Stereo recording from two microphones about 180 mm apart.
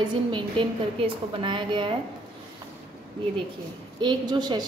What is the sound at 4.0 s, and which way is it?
Speech, 25° right (ahead or behind).